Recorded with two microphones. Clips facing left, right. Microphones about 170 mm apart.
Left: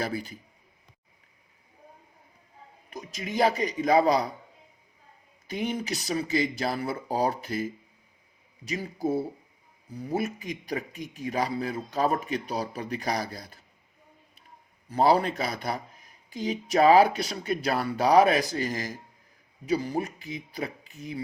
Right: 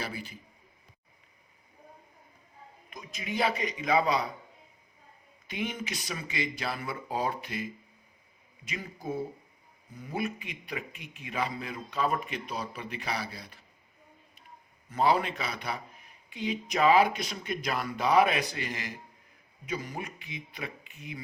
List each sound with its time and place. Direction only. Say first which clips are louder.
0.0 s speech: left 7 dB; 40° left (ahead or behind)
2.9 s speech: left 3 dB; 40° left (ahead or behind)
5.5 s speech: left 5 dB; 40° left (ahead or behind)
14.8 s speech: left 4 dB; 35° left (ahead or behind)